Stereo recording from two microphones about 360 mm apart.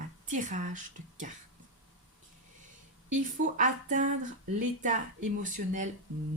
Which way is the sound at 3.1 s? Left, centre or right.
Right.